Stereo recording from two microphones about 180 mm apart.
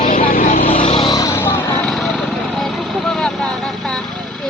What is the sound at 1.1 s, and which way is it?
Vehicle, 15° left (ahead or behind).